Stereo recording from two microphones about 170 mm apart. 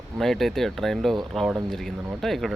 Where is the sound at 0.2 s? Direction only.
Centre (ahead or behind).